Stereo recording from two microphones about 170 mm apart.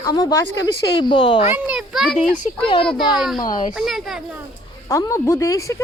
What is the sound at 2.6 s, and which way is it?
Speech, 30° left (ahead or behind).